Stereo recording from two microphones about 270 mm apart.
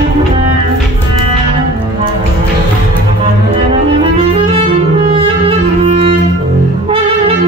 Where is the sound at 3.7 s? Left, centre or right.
Centre.